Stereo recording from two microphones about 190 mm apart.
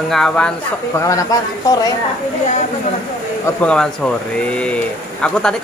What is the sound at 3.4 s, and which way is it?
Speech, 5° left (ahead or behind).